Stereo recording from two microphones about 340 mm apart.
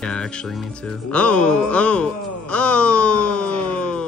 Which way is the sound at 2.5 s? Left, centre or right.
Centre.